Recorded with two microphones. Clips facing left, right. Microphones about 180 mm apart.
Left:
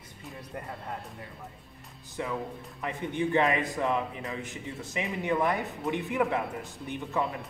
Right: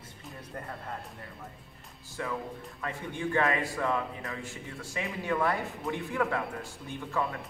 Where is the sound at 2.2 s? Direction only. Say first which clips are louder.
Left 2 dB; 20° left (ahead or behind).